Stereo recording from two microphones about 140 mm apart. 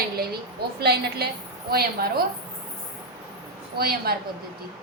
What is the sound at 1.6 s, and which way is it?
Speech, 90° right.